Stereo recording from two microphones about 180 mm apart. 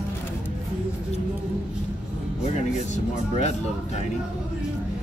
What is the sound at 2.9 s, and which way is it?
Music, 40° left (ahead or behind).